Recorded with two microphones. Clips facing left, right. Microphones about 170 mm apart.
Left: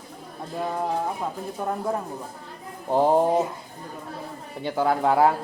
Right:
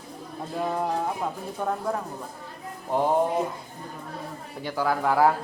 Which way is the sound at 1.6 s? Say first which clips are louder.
Right 1 dB; 5° left (ahead or behind).